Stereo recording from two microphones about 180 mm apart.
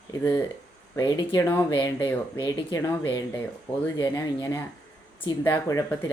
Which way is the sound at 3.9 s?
20° left (ahead or behind).